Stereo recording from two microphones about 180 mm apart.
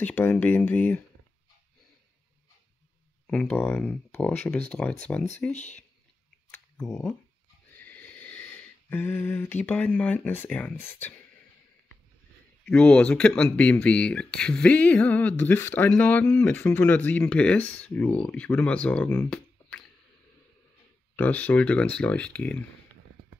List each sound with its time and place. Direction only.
0.0 s speech: 10° left (ahead or behind)
3.3 s speech: 5° left (ahead or behind)
5.5 s speech: 40° left (ahead or behind)
7.7 s a sound: 10° left (ahead or behind)
12.6 s speech: 5° left (ahead or behind)
21.2 s speech: 10° left (ahead or behind)